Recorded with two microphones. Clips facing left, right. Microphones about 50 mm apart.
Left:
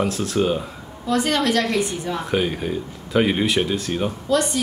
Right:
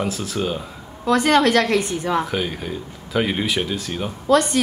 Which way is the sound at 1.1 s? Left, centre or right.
Right.